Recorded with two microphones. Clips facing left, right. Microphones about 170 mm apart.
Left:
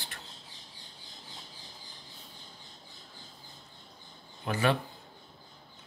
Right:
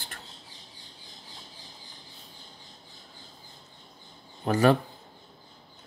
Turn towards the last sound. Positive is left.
turn(degrees=-40)  # may be behind; listen again after turning